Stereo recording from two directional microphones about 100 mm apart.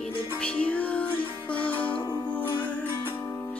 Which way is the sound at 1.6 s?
55° left (ahead or behind).